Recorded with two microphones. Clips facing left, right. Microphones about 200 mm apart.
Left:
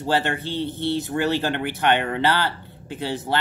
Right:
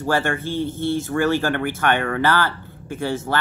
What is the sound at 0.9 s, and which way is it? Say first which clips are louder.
Speech: right 3 dB; 20° left (ahead or behind).